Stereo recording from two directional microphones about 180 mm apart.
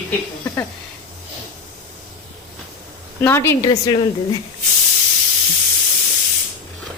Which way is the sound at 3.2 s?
15° left (ahead or behind).